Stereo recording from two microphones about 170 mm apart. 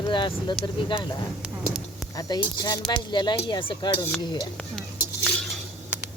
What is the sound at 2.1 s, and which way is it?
Speech, 20° left (ahead or behind).